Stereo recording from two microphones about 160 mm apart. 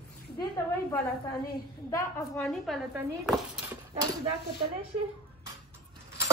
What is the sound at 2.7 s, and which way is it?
Speech, centre (ahead or behind).